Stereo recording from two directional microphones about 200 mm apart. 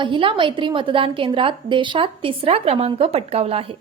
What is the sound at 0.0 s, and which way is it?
A woman's voice, 25° right (ahead or behind).